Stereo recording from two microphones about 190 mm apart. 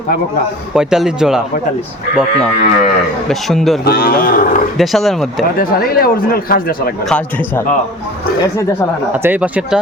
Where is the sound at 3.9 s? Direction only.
55° left (ahead or behind).